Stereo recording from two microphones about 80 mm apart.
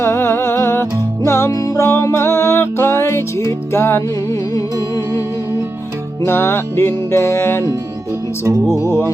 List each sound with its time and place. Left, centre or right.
0.0 s music: left
6.2 s music: left
8.4 s music: right
8.8 s music: left